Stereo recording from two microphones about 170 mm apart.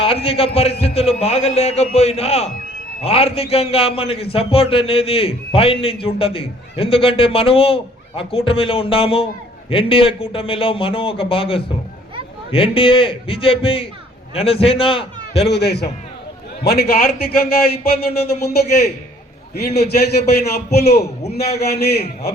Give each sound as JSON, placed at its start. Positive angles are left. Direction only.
{"t": 0.0, "sound": "a man's voice", "side_deg": 35}
{"t": 15.4, "sound": "a man's voice", "side_deg": 75}
{"t": 19.5, "sound": "a man's voice", "side_deg": 70}
{"t": 21.2, "sound": "a sound", "side_deg": 40}
{"t": 21.6, "sound": "a man's voice", "side_deg": 70}